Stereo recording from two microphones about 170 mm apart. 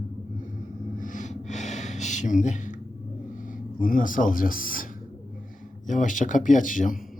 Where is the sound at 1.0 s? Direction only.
50° left (ahead or behind).